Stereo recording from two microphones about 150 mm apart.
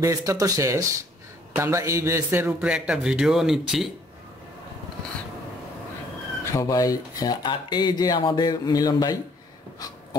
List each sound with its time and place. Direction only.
0.0 s a man's voice: 20° right (ahead or behind)
2.4 s speech: 5° right (ahead or behind)
6.5 s speech: 25° left (ahead or behind)